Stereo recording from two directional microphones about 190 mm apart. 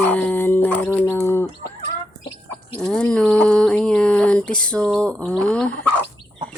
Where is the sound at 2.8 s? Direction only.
5° left (ahead or behind).